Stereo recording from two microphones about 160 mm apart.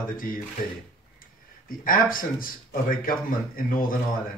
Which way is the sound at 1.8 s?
60° left (ahead or behind).